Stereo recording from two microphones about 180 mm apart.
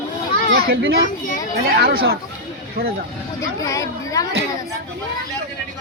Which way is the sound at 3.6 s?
20° left (ahead or behind).